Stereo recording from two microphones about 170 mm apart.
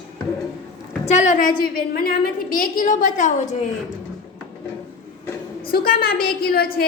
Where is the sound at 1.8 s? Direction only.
60° left (ahead or behind); by 3.6 s 45° left (ahead or behind).